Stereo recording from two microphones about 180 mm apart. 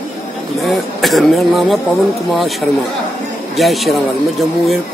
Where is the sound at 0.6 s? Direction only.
Centre (ahead or behind).